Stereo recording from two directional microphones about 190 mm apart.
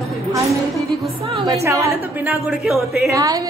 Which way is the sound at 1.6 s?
15° right (ahead or behind).